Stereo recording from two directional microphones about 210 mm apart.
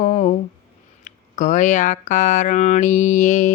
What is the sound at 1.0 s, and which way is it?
Speech, 35° left (ahead or behind).